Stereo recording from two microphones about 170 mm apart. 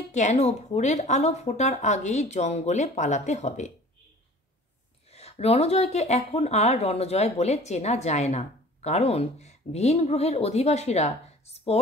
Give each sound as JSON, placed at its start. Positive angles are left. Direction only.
{"t": 0.1, "sound": "a woman's voice", "side_deg": 45}
{"t": 5.1, "sound": "speech", "side_deg": 35}